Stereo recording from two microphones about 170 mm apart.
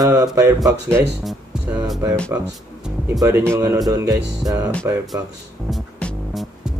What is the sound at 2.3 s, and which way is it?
Speech, 15° right (ahead or behind).